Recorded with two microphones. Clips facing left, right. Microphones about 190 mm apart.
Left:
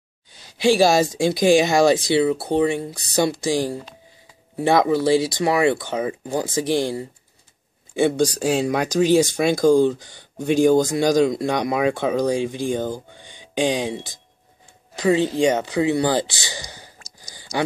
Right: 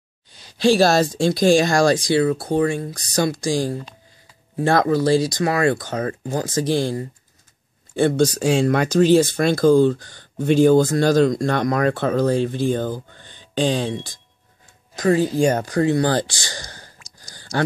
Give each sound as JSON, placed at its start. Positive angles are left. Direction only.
{"t": 0.6, "sound": "speech", "side_deg": 15}
{"t": 2.9, "sound": "speech", "side_deg": 5}
{"t": 3.5, "sound": "speech", "side_deg": 15}
{"t": 15.3, "sound": "speech", "side_deg": 15}
{"t": 17.2, "sound": "a sound", "side_deg": 15}